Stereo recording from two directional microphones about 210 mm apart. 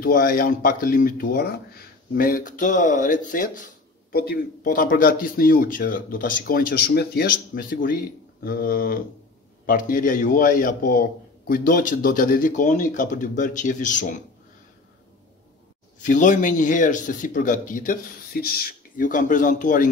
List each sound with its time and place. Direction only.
0.0 s a man's voice: 45° left (ahead or behind)
16.0 s a man's voice: 40° left (ahead or behind)